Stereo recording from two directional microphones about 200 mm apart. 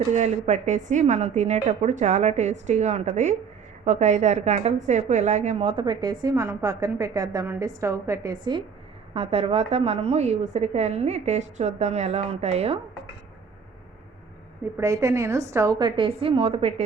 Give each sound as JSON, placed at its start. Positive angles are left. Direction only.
{"t": 0.1, "sound": "a woman's voice", "side_deg": -35}
{"t": 14.8, "sound": "a woman's voice", "side_deg": -15}